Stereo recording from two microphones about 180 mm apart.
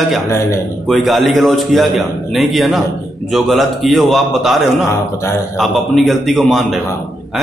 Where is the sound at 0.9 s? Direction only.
Centre (ahead or behind).